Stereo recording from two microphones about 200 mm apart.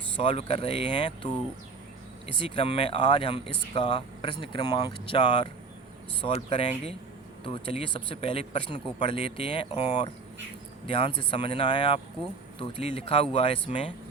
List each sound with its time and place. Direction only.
0.2 s speech: 30° left (ahead or behind)
2.4 s speech: 25° left (ahead or behind)